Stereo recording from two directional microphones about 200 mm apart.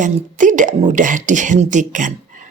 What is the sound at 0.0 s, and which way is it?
Speech, 40° right (ahead or behind).